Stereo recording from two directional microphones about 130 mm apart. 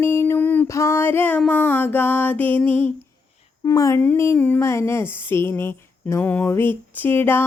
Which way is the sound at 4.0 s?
15° left (ahead or behind).